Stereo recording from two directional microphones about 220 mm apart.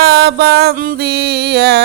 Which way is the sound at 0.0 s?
45° right (ahead or behind).